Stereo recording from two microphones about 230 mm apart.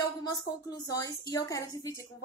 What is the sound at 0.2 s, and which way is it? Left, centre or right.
A woman's voice, centre.